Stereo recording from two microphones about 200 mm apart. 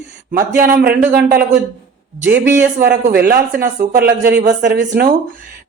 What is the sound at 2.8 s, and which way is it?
Speech, 50° right (ahead or behind).